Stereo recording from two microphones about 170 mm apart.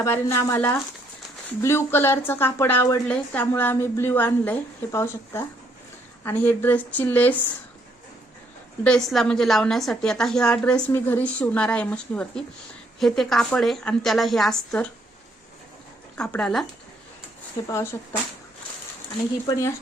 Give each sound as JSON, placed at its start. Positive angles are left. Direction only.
{"t": 0.0, "sound": "a woman's voice", "side_deg": 15}
{"t": 8.8, "sound": "a woman's voice", "side_deg": 5}
{"t": 16.1, "sound": "a woman's voice", "side_deg": 5}
{"t": 17.7, "sound": "a woman's voice", "side_deg": 15}
{"t": 19.5, "sound": "a woman's voice", "side_deg": 20}